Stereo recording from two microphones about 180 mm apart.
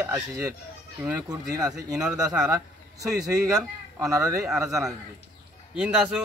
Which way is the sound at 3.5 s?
20° right (ahead or behind).